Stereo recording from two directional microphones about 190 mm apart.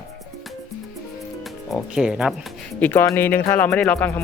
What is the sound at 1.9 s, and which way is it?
Speech, 5° right (ahead or behind).